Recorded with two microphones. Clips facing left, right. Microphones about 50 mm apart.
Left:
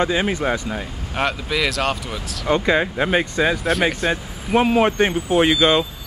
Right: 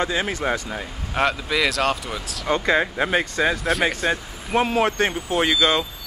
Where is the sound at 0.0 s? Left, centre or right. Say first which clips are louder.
Left 4 dB; centre.